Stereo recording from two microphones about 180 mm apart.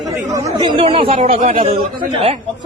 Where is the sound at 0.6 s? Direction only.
30° right (ahead or behind).